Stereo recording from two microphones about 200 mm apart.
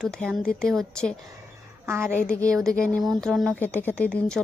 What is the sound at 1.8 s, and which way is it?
Speech, 10° right (ahead or behind).